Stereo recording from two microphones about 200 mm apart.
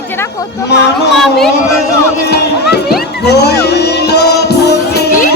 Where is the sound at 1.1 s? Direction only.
Centre (ahead or behind).